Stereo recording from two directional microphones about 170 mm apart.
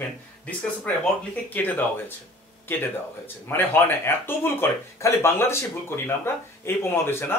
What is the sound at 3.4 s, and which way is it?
Speech, 10° left (ahead or behind).